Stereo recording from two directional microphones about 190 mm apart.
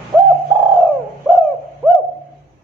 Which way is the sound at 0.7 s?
10° right (ahead or behind).